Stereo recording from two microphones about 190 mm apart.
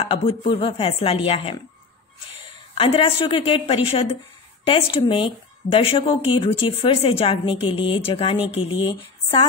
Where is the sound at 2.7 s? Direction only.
30° left (ahead or behind).